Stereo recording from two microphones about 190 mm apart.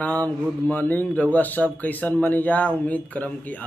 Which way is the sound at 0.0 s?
5° left (ahead or behind).